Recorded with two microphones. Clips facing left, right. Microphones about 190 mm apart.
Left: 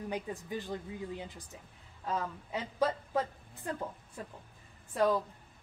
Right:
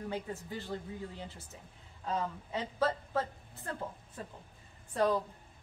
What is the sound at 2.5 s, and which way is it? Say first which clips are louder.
A woman's voice: left 1 dB; 15° left (ahead or behind).